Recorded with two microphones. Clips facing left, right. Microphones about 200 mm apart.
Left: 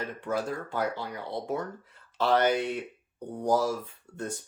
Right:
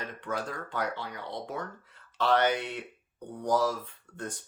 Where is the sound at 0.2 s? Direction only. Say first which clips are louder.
Left 4 dB; 10° left (ahead or behind).